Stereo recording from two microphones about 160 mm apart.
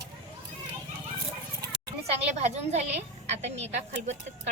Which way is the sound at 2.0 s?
40° right (ahead or behind).